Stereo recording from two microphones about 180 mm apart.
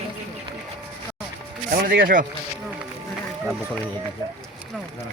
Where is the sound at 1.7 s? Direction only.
55° right (ahead or behind).